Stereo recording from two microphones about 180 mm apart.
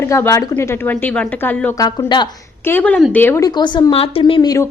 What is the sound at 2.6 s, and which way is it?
Speech, 10° left (ahead or behind).